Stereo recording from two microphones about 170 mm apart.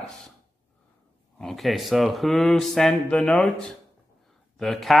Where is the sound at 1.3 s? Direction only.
Centre (ahead or behind).